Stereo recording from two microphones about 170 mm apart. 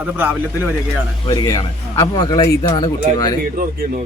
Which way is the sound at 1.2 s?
20° left (ahead or behind).